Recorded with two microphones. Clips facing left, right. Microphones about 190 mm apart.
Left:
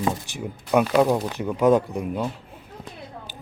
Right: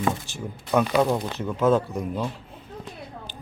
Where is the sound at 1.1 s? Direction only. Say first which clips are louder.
Left 3 dB; 10° left (ahead or behind).